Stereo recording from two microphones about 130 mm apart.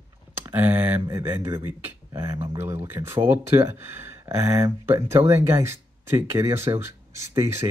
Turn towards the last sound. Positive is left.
turn(degrees=-20)  # may be behind; listen again after turning